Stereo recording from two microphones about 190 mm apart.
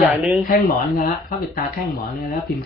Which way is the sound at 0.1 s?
5° right (ahead or behind).